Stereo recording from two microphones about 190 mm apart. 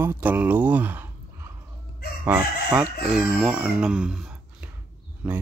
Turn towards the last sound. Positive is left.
turn(degrees=-5)  # may be behind; listen again after turning